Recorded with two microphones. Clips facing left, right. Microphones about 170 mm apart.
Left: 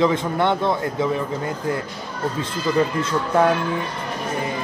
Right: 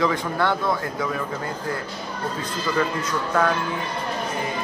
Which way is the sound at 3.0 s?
25° left (ahead or behind).